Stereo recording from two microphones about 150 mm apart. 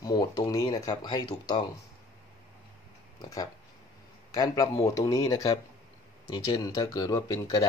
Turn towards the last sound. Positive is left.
turn(degrees=20)  # may be behind; listen again after turning